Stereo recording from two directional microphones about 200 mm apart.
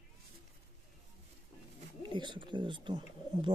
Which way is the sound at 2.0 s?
25° right (ahead or behind).